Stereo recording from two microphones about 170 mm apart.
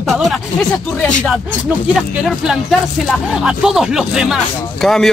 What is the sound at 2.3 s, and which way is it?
Speech, centre (ahead or behind).